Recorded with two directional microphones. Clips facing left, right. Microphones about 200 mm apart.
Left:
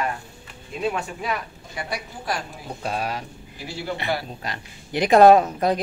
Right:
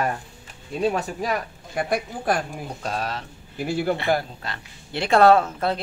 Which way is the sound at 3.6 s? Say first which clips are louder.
Right 8 dB; 55° right (ahead or behind).